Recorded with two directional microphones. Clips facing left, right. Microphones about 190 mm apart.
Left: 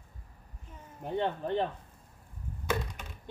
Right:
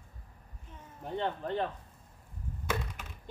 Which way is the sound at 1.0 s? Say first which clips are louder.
Left 3 dB; 15° left (ahead or behind).